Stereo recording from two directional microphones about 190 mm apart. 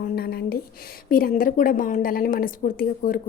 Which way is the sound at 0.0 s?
55° left (ahead or behind).